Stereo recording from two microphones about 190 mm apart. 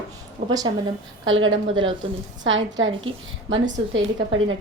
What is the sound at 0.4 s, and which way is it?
A woman's voice, 85° right.